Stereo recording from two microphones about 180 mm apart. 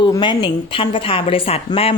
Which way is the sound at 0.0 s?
25° left (ahead or behind).